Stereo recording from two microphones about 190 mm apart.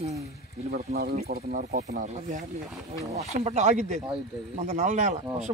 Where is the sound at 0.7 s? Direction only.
55° right (ahead or behind).